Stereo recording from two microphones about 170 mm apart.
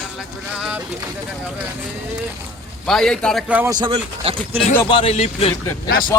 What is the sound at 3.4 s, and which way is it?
Speech, 10° right (ahead or behind).